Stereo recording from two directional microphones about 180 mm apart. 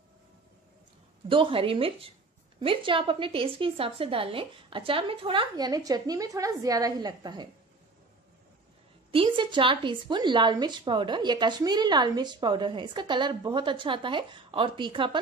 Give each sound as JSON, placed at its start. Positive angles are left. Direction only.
{"t": 1.3, "sound": "a woman's voice", "side_deg": -30}
{"t": 9.1, "sound": "a woman's voice", "side_deg": -30}